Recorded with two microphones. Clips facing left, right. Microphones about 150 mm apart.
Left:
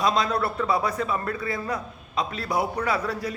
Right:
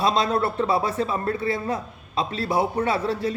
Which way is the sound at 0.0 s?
30° right (ahead or behind).